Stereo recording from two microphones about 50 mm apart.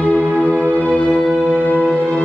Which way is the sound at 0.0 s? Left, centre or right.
Left.